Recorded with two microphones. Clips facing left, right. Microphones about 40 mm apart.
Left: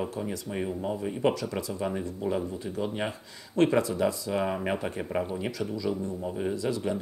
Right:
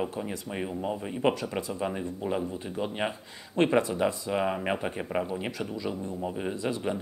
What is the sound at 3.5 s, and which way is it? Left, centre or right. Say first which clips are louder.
Speech: even; right.